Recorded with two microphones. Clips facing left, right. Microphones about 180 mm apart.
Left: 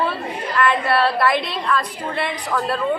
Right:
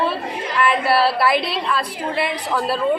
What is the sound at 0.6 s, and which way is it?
A woman's voice, 5° right (ahead or behind).